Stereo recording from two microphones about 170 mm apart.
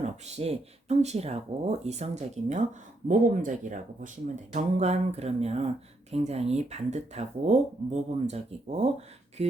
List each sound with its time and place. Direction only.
0.0 s speech: 40° right (ahead or behind)